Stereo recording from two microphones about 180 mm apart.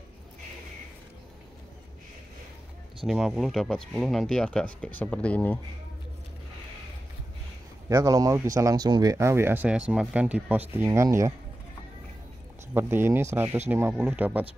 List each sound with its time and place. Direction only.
3.1 s speech: centre (ahead or behind)
7.9 s speech: 20° right (ahead or behind)
12.7 s speech: 15° right (ahead or behind)